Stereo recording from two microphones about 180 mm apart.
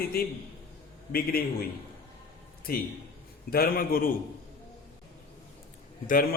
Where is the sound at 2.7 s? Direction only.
55° left (ahead or behind).